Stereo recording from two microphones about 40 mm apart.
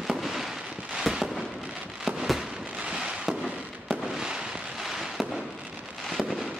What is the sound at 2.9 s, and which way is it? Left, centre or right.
Fireworks, centre.